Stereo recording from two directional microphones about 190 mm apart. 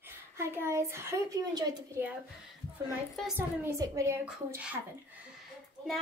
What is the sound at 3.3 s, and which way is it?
A woman's voice, 10° right (ahead or behind).